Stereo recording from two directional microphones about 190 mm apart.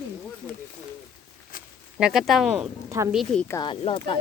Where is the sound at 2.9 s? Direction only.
15° right (ahead or behind).